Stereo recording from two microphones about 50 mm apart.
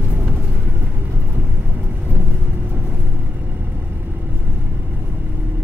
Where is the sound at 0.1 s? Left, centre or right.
Right.